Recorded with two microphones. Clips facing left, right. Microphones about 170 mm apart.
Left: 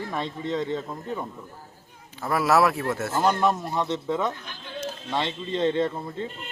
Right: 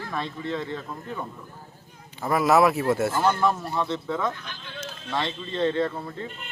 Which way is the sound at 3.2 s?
15° left (ahead or behind).